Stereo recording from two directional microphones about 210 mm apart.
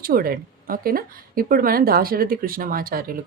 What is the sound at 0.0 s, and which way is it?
Speech, 45° right (ahead or behind).